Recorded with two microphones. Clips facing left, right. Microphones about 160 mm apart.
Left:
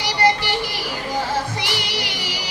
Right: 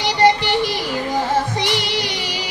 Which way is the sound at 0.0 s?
20° right (ahead or behind).